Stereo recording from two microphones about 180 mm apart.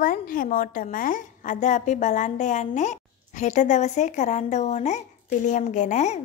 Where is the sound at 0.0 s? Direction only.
50° left (ahead or behind).